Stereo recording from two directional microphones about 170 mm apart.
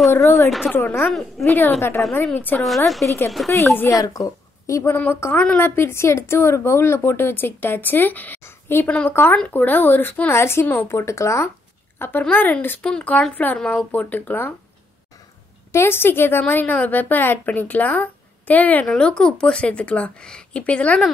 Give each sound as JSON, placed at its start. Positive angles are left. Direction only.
{"t": 0.1, "sound": "a woman's voice", "side_deg": 15}
{"t": 0.5, "sound": "a woman's voice", "side_deg": 0}
{"t": 0.7, "sound": "a woman's voice", "side_deg": 15}
{"t": 3.3, "sound": "a woman's voice", "side_deg": 0}
{"t": 3.7, "sound": "a woman's voice", "side_deg": 15}
{"t": 15.7, "sound": "a woman's voice", "side_deg": 15}